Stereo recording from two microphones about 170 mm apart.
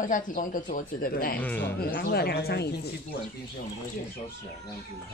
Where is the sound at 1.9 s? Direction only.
65° left (ahead or behind).